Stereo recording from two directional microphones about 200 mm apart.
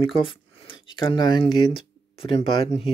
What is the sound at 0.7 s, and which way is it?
Speech, 20° left (ahead or behind).